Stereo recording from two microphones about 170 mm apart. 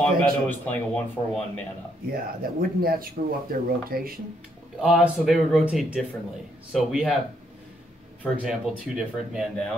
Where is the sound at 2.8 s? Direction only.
60° right (ahead or behind).